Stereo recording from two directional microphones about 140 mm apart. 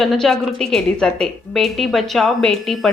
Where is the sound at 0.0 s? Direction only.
Centre (ahead or behind).